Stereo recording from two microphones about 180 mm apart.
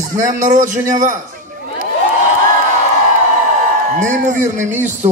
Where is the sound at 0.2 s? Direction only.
45° right (ahead or behind).